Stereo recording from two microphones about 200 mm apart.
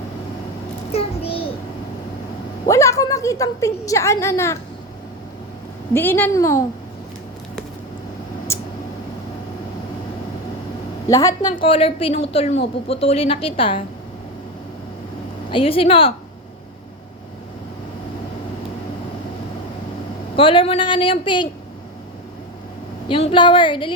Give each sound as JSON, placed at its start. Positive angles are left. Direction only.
{"t": 0.9, "sound": "a child's voice", "side_deg": 30}
{"t": 2.6, "sound": "a woman's voice", "side_deg": 15}
{"t": 5.9, "sound": "a woman's voice", "side_deg": 10}
{"t": 8.5, "sound": "a sound", "side_deg": 15}
{"t": 11.1, "sound": "a woman's voice", "side_deg": 15}
{"t": 11.6, "sound": "a man's voice", "side_deg": 30}
{"t": 15.4, "sound": "a man's voice", "side_deg": 25}
{"t": 20.3, "sound": "a man's voice", "side_deg": 25}
{"t": 23.0, "sound": "a man's voice", "side_deg": 25}